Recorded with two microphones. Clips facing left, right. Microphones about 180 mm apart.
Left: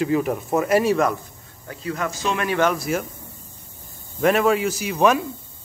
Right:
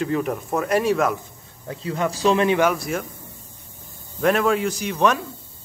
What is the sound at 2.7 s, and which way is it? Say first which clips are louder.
Speech: left 2 dB; centre (ahead or behind).